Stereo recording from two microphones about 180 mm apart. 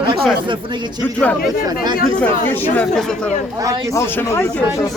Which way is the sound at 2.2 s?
10° left (ahead or behind).